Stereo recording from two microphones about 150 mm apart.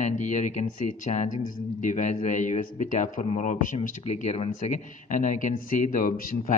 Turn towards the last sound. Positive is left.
turn(degrees=65)  # may be behind; listen again after turning